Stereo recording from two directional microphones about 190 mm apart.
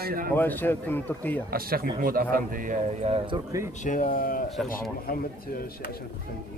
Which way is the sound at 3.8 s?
40° left (ahead or behind).